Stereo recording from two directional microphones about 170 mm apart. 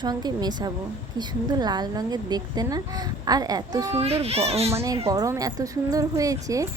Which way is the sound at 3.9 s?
35° right (ahead or behind).